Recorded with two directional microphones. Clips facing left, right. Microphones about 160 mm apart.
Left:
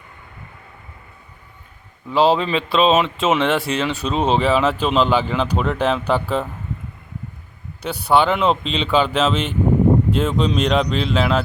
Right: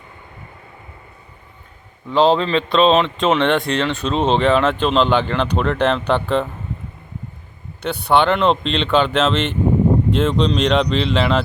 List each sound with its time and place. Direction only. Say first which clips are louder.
2.0 s speech: right 1 dB; 5° left (ahead or behind)
7.8 s speech: right 1 dB; centre (ahead or behind)